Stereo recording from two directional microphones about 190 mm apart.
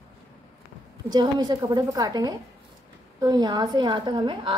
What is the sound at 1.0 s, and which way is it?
A woman's voice, 20° right (ahead or behind).